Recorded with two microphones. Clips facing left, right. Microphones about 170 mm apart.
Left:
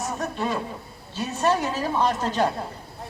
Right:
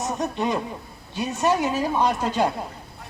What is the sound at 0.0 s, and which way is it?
A man's voice, 20° right (ahead or behind).